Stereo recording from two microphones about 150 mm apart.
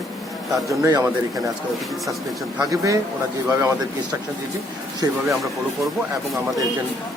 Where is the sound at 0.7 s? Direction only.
25° right (ahead or behind).